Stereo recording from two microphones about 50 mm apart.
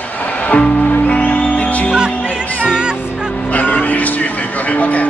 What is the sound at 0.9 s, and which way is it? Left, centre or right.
Music, left.